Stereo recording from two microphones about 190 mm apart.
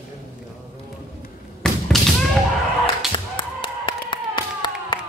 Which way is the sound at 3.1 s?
25° left (ahead or behind).